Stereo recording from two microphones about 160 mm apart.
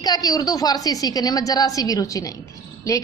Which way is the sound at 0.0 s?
25° left (ahead or behind).